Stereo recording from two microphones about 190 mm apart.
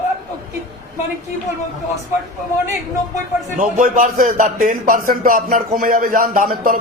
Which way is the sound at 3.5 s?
40° right (ahead or behind).